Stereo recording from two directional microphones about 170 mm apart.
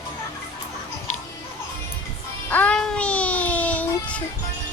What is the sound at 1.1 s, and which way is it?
Music, 50° left (ahead or behind).